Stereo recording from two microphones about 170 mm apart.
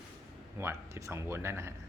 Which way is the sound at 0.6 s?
15° right (ahead or behind).